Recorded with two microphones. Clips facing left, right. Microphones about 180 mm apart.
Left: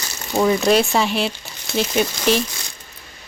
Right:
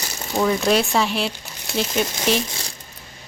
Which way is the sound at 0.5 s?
Centre (ahead or behind).